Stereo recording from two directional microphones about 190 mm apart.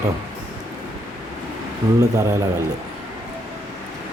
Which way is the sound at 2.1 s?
15° right (ahead or behind).